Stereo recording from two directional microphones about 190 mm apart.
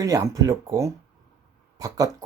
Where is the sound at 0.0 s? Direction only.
15° right (ahead or behind).